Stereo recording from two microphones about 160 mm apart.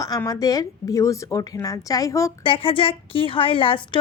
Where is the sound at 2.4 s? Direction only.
35° left (ahead or behind).